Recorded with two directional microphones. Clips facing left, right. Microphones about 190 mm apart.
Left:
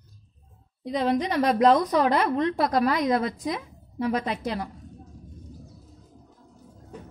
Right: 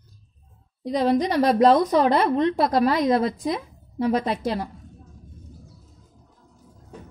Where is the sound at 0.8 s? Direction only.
35° right (ahead or behind).